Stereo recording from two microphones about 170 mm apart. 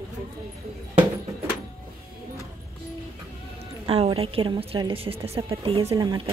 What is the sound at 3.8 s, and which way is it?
A woman's voice, 35° right (ahead or behind).